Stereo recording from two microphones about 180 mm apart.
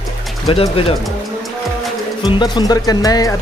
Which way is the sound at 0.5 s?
30° left (ahead or behind).